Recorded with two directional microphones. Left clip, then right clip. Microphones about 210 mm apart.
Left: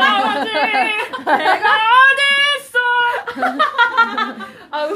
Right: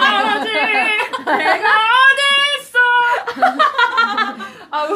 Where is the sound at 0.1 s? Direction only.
15° left (ahead or behind).